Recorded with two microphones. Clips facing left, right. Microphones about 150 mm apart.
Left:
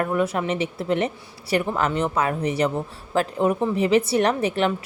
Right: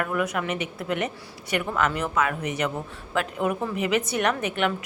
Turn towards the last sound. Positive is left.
turn(degrees=30)  # may be behind; listen again after turning